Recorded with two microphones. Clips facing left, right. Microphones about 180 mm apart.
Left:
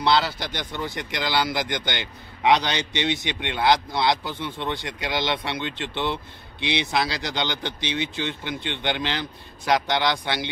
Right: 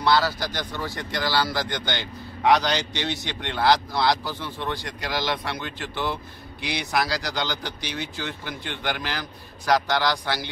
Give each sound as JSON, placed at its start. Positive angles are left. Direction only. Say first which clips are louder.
{"t": 0.0, "sound": "speech", "louder": "even", "side_deg": 25}